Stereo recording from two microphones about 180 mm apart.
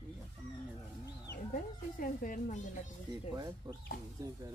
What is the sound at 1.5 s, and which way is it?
Speech, 50° left (ahead or behind).